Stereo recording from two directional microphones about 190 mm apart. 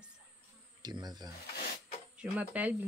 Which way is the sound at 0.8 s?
20° right (ahead or behind).